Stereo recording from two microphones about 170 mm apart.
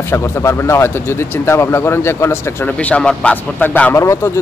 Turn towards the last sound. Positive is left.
turn(degrees=15)  # may be behind; listen again after turning